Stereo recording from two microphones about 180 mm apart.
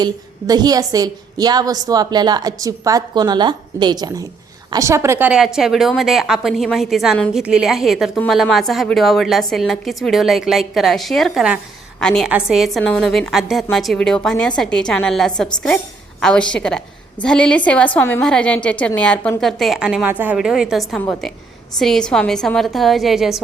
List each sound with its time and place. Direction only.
0.0 s a woman's voice: 20° right (ahead or behind); by 23.4 s centre (ahead or behind)